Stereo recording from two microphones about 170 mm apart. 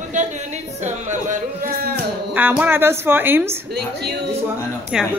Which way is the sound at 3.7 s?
70° right (ahead or behind).